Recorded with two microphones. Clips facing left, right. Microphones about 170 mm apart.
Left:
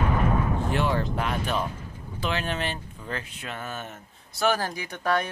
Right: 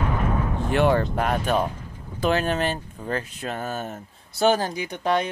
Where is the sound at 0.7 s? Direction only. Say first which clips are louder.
Right 10 dB; 60° right (ahead or behind); by 4.5 s 40° right (ahead or behind).